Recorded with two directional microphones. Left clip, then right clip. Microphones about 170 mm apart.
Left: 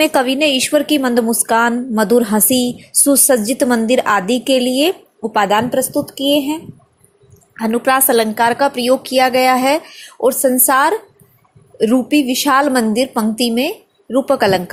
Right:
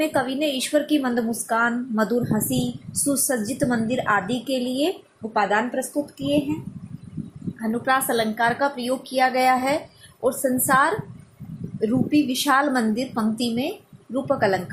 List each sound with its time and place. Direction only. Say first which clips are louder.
0.0 s a woman's voice: left 9 dB; 45° left (ahead or behind)
7.7 s a woman's voice: left 8 dB; 40° left (ahead or behind)